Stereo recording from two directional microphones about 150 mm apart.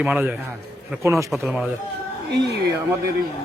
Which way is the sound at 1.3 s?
5° right (ahead or behind).